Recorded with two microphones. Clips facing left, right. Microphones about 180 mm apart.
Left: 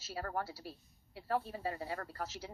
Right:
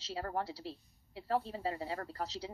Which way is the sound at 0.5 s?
25° right (ahead or behind).